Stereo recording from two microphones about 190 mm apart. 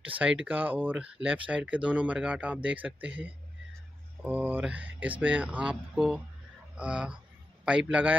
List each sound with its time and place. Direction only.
0.5 s speech: 10° right (ahead or behind)
4.2 s a man's voice: 10° right (ahead or behind)